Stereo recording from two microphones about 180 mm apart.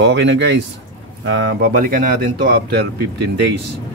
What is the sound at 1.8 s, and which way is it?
A man's voice, 50° right (ahead or behind).